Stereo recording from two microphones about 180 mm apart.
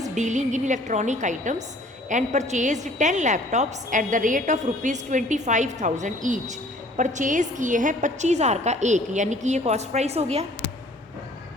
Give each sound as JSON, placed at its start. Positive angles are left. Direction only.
{"t": 0.1, "sound": "a woman's voice", "side_deg": -40}